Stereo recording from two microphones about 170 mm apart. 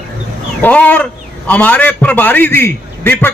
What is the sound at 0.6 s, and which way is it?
A man's voice, 10° left (ahead or behind).